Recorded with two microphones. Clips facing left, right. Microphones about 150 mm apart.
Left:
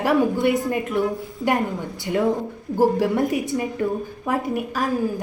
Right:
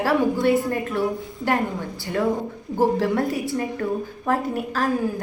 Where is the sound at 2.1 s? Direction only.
15° left (ahead or behind).